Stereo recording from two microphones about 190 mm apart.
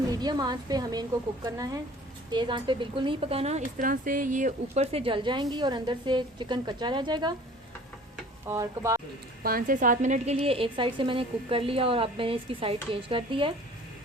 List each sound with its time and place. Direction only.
0.1 s speech: 20° right (ahead or behind)
8.1 s stir: 15° right (ahead or behind)
9.4 s speech: 50° right (ahead or behind); by 13.5 s 30° right (ahead or behind)